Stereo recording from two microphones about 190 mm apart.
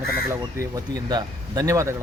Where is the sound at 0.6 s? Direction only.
20° right (ahead or behind).